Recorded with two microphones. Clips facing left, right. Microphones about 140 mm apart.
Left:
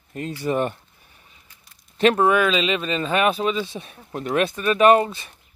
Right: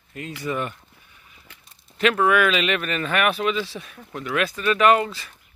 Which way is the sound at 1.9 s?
30° left (ahead or behind).